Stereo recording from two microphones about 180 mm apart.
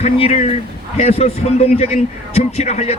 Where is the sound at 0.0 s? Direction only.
35° left (ahead or behind).